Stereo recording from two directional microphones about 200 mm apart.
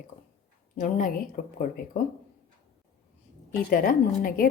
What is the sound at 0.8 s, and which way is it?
Speech, 40° left (ahead or behind).